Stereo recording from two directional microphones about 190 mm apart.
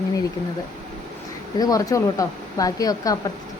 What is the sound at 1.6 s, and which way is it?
A woman's voice, 20° left (ahead or behind).